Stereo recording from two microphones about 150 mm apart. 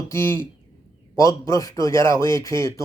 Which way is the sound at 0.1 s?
20° left (ahead or behind).